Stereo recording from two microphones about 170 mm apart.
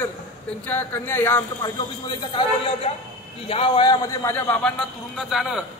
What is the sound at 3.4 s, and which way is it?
A man's voice, 30° left (ahead or behind).